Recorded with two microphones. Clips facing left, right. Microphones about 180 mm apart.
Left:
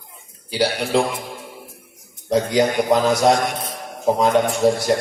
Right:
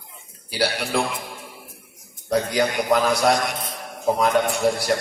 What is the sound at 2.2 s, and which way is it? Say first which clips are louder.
A man's voice: left 4 dB; 20° left (ahead or behind).